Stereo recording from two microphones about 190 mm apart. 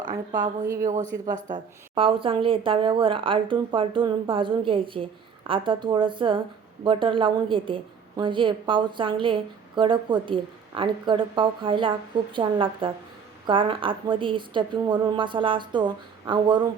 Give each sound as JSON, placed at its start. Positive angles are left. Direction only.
{"t": 0.0, "sound": "a woman's voice", "side_deg": -20}
{"t": 1.5, "sound": "a woman's voice", "side_deg": -35}